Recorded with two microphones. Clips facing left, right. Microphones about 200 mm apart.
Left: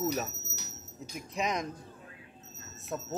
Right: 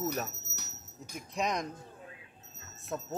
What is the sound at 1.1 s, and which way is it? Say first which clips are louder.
Speech: even; centre (ahead or behind).